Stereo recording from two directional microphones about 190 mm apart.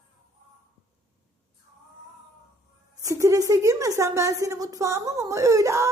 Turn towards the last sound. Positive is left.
turn(degrees=-15)  # may be behind; listen again after turning